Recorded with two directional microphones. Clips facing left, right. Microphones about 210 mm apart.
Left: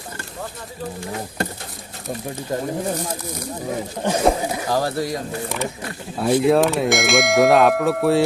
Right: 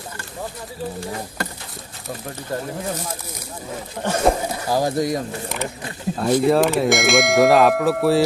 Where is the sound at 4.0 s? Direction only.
15° left (ahead or behind).